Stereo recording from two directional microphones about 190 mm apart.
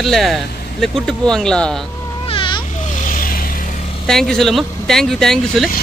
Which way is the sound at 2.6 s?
40° left (ahead or behind).